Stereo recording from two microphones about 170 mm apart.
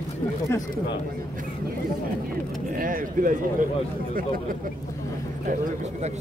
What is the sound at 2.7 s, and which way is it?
Speech, 55° right (ahead or behind).